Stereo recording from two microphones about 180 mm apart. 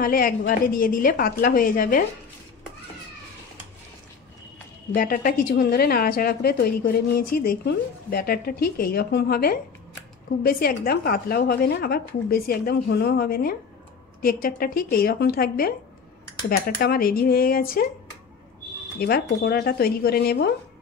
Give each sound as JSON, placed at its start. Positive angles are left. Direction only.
{"t": 0.0, "sound": "a woman's voice", "side_deg": 50}
{"t": 4.9, "sound": "a woman's voice", "side_deg": 50}
{"t": 18.9, "sound": "a woman's voice", "side_deg": 60}